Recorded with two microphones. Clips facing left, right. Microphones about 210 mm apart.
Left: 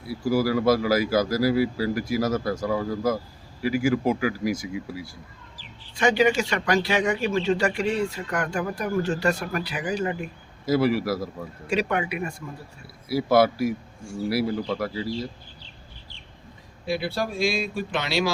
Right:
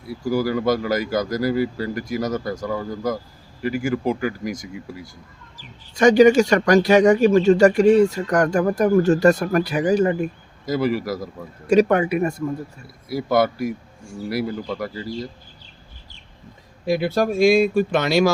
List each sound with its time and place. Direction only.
0.1 s speech: centre (ahead or behind)
5.5 s speech: 45° right (ahead or behind)
10.7 s speech: centre (ahead or behind)
11.7 s speech: 45° right (ahead or behind)
13.1 s speech: 5° left (ahead or behind)
16.8 s speech: 45° right (ahead or behind)